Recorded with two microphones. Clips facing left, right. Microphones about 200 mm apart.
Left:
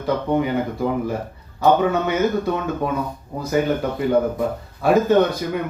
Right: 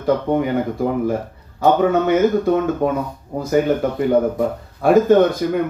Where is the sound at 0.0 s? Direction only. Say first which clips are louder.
Right 3 dB; 50° right (ahead or behind).